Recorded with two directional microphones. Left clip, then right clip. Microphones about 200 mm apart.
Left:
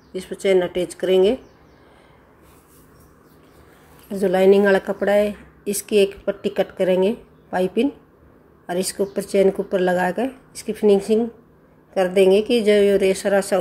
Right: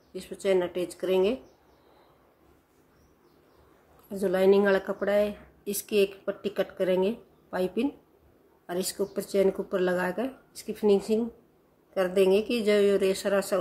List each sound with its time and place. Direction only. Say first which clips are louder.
0.1 s a woman's voice: left 8 dB; 5° left (ahead or behind)
4.1 s a woman's voice: left 7 dB; 5° left (ahead or behind)